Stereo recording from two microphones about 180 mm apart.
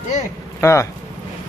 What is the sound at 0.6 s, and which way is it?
Speech, 15° left (ahead or behind).